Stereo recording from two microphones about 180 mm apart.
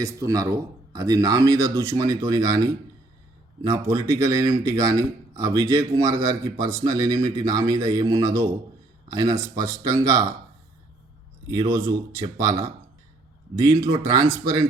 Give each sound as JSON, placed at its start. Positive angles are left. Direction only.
{"t": 0.0, "sound": "speech", "side_deg": -15}
{"t": 11.4, "sound": "speech", "side_deg": -20}